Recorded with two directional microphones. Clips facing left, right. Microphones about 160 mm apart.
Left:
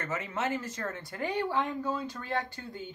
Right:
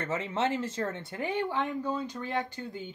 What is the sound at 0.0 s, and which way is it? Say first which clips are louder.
Speech: right 3 dB; 25° right (ahead or behind).